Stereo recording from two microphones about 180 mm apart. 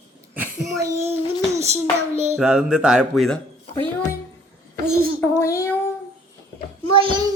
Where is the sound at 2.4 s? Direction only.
5° right (ahead or behind).